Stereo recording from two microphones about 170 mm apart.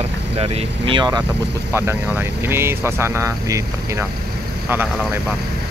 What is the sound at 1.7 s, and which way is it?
Speech, 15° right (ahead or behind).